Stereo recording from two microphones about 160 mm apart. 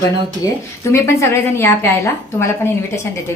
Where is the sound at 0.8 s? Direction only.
15° left (ahead or behind).